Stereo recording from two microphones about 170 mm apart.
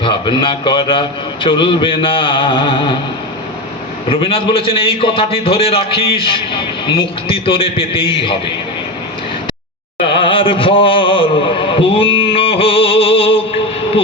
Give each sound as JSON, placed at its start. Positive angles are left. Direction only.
{"t": 0.0, "sound": "a man's voice", "side_deg": 30}
{"t": 4.1, "sound": "a man's voice", "side_deg": 35}
{"t": 10.2, "sound": "a sound", "side_deg": 30}